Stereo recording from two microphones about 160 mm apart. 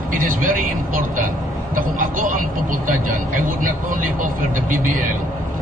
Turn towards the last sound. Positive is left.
turn(degrees=-55)  # may be behind; listen again after turning